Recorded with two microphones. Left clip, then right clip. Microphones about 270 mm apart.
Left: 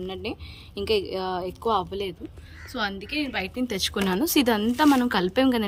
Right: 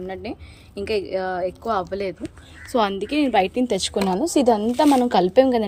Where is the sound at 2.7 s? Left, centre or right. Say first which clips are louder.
Right 8 dB; centre.